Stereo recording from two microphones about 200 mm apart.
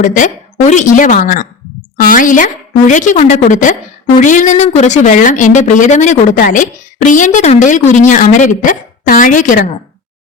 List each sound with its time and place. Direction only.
0.7 s a woman's voice: 40° left (ahead or behind)